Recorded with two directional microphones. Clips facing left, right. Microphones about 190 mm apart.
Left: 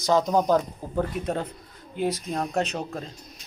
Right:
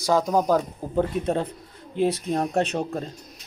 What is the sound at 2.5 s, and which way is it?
Speech, 35° right (ahead or behind).